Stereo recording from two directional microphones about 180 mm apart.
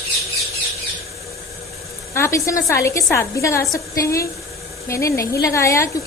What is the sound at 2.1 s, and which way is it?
A woman's voice, 15° left (ahead or behind).